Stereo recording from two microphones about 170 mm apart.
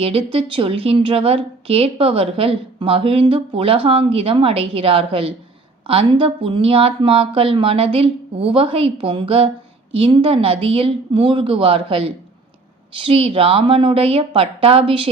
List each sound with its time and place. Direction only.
0.0 s a woman's voice: 35° right (ahead or behind)